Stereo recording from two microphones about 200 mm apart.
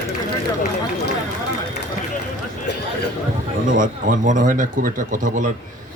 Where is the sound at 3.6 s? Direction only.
40° right (ahead or behind).